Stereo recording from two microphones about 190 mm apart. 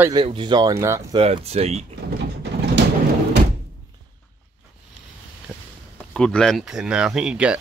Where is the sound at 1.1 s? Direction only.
30° right (ahead or behind).